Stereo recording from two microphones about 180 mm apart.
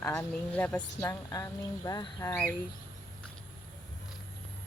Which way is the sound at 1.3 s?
20° left (ahead or behind).